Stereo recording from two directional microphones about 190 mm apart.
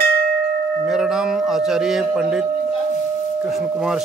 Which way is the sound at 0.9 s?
5° right (ahead or behind).